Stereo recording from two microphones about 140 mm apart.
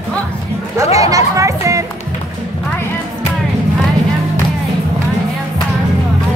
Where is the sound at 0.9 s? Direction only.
25° right (ahead or behind).